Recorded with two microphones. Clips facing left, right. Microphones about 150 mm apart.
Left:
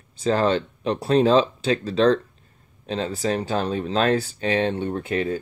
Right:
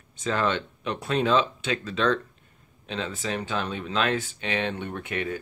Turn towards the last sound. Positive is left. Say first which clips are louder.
# left 6 dB
turn(degrees=30)  # may be behind; listen again after turning